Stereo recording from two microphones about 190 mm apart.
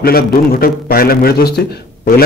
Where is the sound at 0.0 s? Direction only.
50° left (ahead or behind).